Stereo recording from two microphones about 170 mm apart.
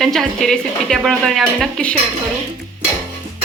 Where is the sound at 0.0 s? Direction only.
Centre (ahead or behind).